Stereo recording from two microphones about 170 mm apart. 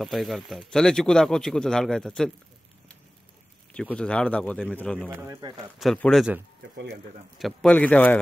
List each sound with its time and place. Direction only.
0.0 s speech: centre (ahead or behind)
3.7 s speech: 5° left (ahead or behind)
5.1 s speech: 15° right (ahead or behind)
5.8 s speech: 5° left (ahead or behind)
7.3 s speech: 5° left (ahead or behind)